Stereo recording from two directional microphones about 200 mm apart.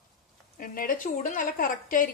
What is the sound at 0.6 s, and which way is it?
A woman's voice, 45° left (ahead or behind).